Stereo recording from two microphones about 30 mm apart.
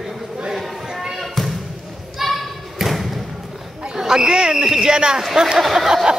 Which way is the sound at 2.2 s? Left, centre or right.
Centre.